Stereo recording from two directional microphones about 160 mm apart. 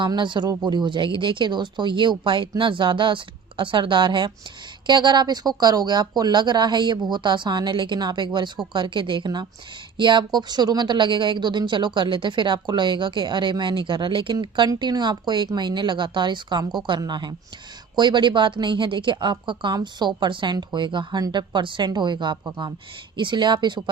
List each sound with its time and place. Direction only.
0.0 s speech: 30° right (ahead or behind)